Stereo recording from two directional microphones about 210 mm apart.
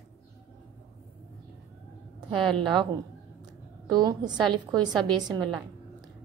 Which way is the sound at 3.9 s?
20° right (ahead or behind).